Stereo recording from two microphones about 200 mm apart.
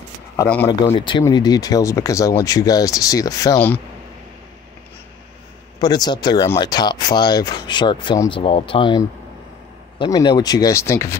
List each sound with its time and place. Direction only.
0.4 s speech: 10° left (ahead or behind)
0.7 s speech: 20° left (ahead or behind)
5.8 s speech: 20° left (ahead or behind)